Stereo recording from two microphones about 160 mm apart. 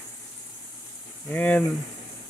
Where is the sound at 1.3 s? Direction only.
10° left (ahead or behind).